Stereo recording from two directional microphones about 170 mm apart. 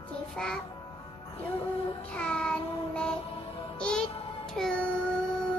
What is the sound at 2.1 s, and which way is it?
Child singing, 5° left (ahead or behind).